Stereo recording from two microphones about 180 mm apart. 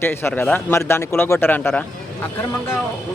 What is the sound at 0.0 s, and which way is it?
A man's voice, 10° left (ahead or behind).